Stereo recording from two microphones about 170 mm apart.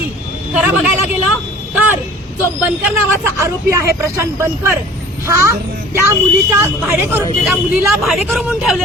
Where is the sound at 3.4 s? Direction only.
15° right (ahead or behind).